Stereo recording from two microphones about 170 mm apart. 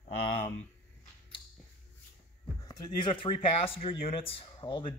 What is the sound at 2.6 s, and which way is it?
Speech, 25° left (ahead or behind).